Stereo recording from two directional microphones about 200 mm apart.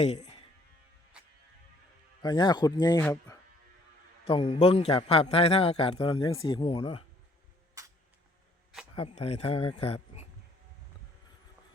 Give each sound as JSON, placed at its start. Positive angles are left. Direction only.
{"t": 0.0, "sound": "speech", "side_deg": 35}
{"t": 2.2, "sound": "a man's voice", "side_deg": 20}
{"t": 4.3, "sound": "a man's voice", "side_deg": 30}
{"t": 7.8, "sound": "a sound", "side_deg": -15}
{"t": 9.0, "sound": "a man's voice", "side_deg": 30}